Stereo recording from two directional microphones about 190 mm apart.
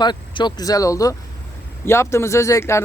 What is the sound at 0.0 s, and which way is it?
Speech, 25° left (ahead or behind).